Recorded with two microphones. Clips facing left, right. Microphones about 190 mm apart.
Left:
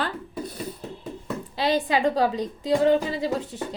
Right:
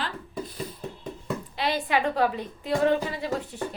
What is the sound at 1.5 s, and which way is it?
Speech, 35° left (ahead or behind).